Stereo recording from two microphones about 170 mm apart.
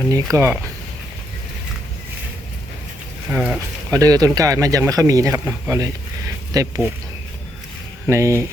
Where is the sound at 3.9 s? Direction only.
20° right (ahead or behind).